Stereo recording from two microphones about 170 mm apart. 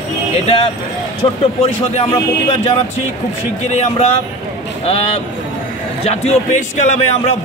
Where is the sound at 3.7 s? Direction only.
40° left (ahead or behind).